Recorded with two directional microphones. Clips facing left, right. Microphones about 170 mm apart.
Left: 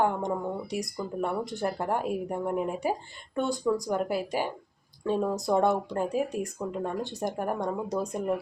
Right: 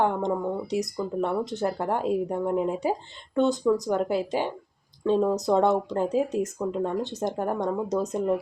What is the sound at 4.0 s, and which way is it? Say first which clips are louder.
Speech: right 3 dB; 25° right (ahead or behind).